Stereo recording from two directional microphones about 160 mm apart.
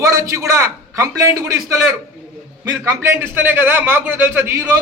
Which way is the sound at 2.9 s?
15° right (ahead or behind).